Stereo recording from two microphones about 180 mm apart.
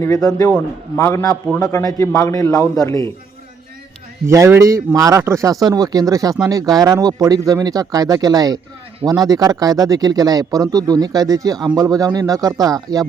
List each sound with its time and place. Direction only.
0.0 s a man's voice: 20° left (ahead or behind)
4.3 s speech: 15° right (ahead or behind)